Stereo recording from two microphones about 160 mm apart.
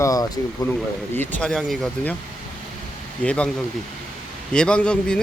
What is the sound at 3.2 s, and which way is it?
Speech, 5° left (ahead or behind).